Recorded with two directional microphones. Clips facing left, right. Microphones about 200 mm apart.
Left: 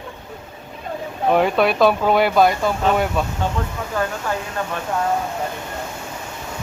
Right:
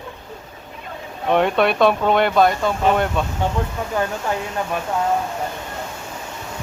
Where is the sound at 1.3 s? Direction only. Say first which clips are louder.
Even; centre (ahead or behind).